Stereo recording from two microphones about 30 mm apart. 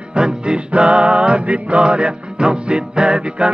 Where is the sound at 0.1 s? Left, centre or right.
Right.